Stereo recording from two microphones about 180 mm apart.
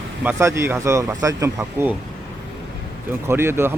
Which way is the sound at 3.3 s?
15° right (ahead or behind).